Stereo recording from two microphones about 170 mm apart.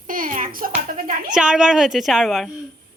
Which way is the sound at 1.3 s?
5° right (ahead or behind).